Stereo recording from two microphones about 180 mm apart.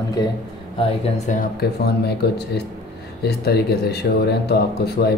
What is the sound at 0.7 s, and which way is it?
Speech, 35° left (ahead or behind).